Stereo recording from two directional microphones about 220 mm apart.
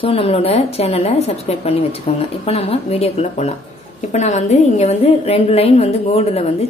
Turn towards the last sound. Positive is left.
turn(degrees=30)  # may be behind; listen again after turning